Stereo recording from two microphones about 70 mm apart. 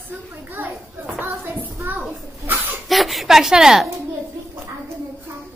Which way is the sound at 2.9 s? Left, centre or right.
Centre.